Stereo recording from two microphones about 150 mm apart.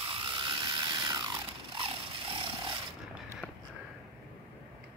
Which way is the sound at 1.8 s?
35° right (ahead or behind).